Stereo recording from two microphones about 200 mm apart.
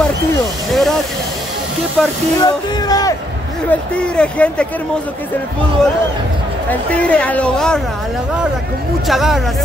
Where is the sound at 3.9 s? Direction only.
5° left (ahead or behind).